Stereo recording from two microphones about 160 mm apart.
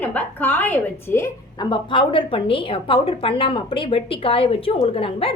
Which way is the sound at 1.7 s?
30° left (ahead or behind).